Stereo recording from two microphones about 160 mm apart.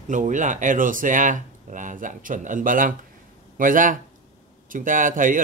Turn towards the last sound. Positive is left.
turn(degrees=-55)  # may be behind; listen again after turning